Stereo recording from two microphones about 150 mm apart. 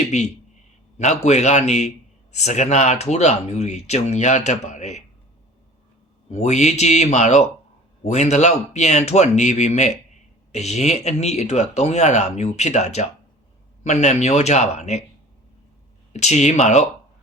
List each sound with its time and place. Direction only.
0.0 s speech: 50° left (ahead or behind)
6.3 s speech: 50° left (ahead or behind)
16.1 s speech: 50° left (ahead or behind)